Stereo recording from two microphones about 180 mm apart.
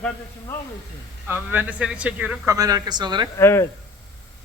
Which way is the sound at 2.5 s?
20° right (ahead or behind).